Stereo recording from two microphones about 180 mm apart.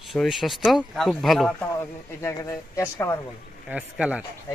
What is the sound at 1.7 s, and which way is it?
Speech, 15° left (ahead or behind).